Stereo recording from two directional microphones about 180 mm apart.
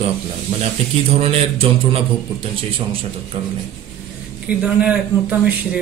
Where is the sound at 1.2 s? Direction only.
35° right (ahead or behind).